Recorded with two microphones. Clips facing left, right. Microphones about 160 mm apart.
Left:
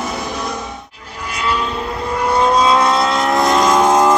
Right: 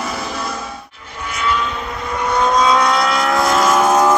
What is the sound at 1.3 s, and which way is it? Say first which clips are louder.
Vehicle: even; 35° left (ahead or behind).